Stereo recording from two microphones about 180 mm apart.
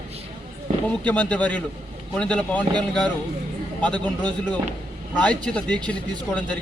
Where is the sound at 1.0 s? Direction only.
10° left (ahead or behind).